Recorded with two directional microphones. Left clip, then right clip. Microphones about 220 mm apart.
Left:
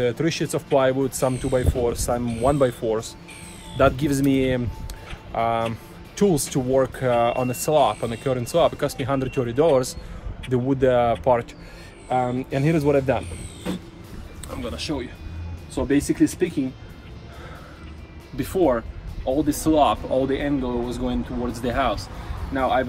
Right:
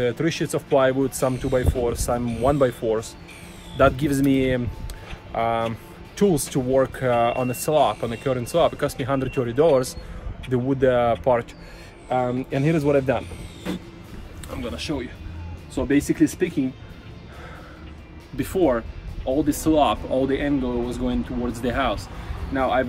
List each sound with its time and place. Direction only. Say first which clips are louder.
0.0 s speech: even; centre (ahead or behind)
14.5 s speech: even; 10° left (ahead or behind)
18.4 s speech: even; 15° left (ahead or behind)